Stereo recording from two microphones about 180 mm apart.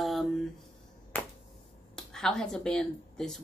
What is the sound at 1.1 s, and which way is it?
Finger snapping, 5° left (ahead or behind).